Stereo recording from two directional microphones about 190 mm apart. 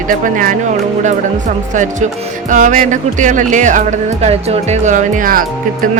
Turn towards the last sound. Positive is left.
turn(degrees=-45)  # may be behind; listen again after turning